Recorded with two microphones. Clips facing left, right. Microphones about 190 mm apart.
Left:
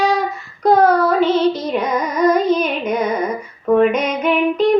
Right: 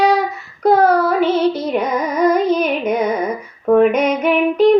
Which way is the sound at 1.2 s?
10° right (ahead or behind).